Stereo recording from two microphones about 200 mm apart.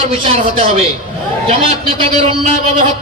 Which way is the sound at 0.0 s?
30° right (ahead or behind).